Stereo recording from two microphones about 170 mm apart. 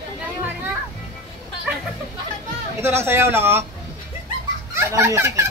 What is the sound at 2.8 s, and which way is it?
Speech, 15° right (ahead or behind).